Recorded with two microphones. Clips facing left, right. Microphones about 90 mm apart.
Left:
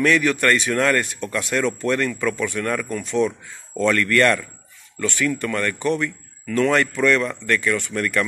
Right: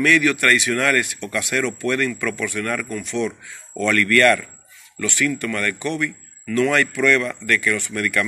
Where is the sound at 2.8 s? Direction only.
45° left (ahead or behind).